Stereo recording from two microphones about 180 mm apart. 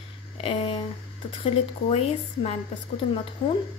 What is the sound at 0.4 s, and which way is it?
A woman's voice, 35° left (ahead or behind).